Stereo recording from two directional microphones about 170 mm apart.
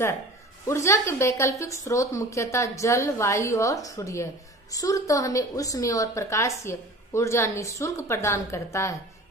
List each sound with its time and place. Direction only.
0.7 s a woman's voice: 15° left (ahead or behind)